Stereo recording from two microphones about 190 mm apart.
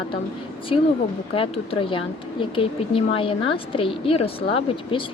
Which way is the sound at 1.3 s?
30° left (ahead or behind).